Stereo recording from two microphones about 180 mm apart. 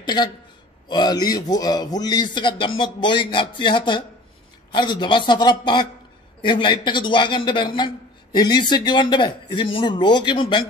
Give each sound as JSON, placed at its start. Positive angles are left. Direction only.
{"t": 0.0, "sound": "a man's voice", "side_deg": 25}